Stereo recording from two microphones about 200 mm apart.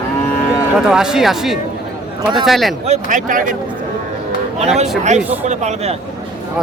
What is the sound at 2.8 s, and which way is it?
Speech, 35° right (ahead or behind).